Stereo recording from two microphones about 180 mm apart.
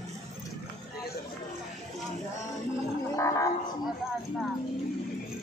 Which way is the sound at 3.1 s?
20° left (ahead or behind).